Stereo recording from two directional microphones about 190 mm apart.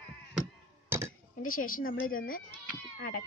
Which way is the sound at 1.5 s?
45° left (ahead or behind).